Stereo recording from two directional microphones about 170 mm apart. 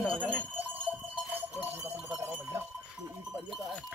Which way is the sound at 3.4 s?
Centre (ahead or behind).